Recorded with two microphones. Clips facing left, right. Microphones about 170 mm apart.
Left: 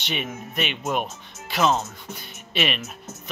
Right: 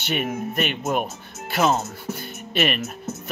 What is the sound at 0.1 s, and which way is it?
Speech, 50° right (ahead or behind).